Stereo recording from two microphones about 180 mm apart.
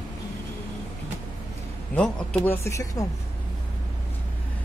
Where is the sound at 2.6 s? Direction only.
15° left (ahead or behind).